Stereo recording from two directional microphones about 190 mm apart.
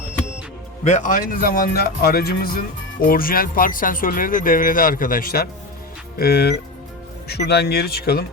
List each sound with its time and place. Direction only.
0.9 s speech: 40° left (ahead or behind)